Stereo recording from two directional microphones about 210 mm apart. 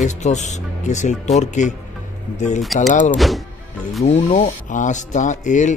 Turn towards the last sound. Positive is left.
turn(degrees=35)  # may be behind; listen again after turning